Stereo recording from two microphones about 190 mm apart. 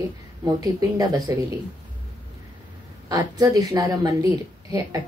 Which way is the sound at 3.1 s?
20° right (ahead or behind).